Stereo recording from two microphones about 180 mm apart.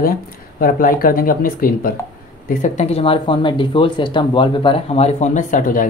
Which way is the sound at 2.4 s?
40° left (ahead or behind).